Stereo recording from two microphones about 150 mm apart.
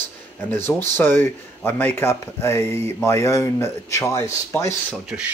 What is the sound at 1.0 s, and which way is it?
Speech, 15° left (ahead or behind).